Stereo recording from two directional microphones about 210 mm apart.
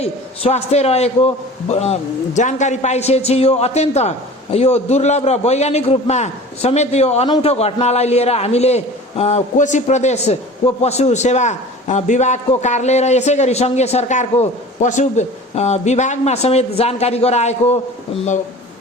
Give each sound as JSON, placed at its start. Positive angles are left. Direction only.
{"t": 0.0, "sound": "a man's voice", "side_deg": 30}